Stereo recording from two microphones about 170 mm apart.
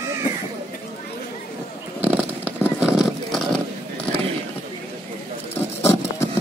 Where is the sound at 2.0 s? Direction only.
10° right (ahead or behind).